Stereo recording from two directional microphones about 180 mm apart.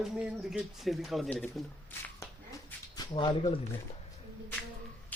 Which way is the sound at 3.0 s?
25° left (ahead or behind).